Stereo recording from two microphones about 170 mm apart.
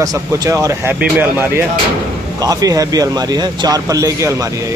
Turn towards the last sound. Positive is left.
turn(degrees=-20)  # may be behind; listen again after turning